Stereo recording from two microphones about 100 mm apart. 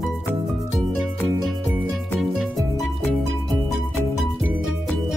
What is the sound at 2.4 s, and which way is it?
Music, centre (ahead or behind).